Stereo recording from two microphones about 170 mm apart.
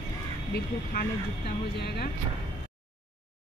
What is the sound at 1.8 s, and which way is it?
Speech, 70° left (ahead or behind).